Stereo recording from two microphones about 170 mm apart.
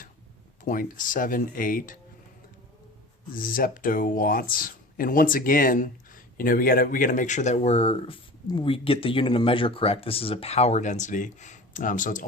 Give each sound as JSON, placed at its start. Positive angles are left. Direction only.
{"t": 0.6, "sound": "speech", "side_deg": 55}
{"t": 3.3, "sound": "speech", "side_deg": 55}